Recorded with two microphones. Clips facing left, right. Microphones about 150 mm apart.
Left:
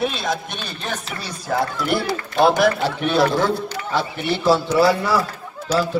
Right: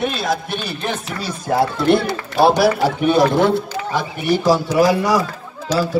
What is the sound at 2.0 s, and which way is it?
Speech, centre (ahead or behind).